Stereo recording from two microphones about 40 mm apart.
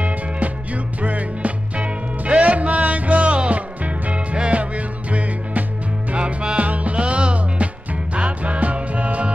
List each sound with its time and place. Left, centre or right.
1.0 s music: right